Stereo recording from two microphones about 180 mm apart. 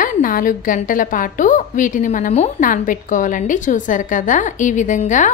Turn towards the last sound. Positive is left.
turn(degrees=45)  # may be behind; listen again after turning